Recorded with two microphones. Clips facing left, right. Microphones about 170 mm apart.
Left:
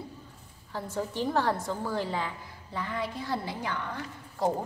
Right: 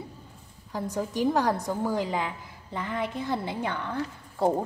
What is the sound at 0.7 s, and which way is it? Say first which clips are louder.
A woman's voice: right 3 dB; 15° right (ahead or behind).